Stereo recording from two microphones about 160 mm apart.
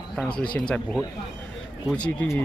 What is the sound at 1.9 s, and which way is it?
Speech, 10° left (ahead or behind).